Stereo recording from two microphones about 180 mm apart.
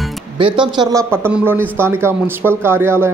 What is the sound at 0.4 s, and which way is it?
Speech, 25° right (ahead or behind).